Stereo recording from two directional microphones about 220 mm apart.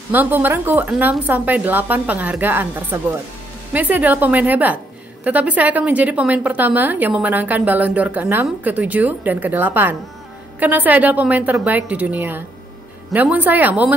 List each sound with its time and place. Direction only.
0.1 s a woman's voice: 10° right (ahead or behind)